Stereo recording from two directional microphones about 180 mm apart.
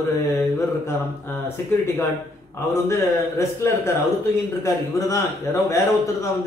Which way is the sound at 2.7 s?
15° left (ahead or behind).